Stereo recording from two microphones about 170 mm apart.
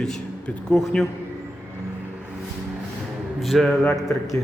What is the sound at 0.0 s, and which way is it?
Speech, 5° left (ahead or behind).